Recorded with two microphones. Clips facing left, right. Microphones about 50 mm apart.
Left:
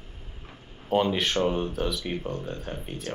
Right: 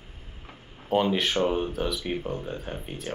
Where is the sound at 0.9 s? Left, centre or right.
Centre.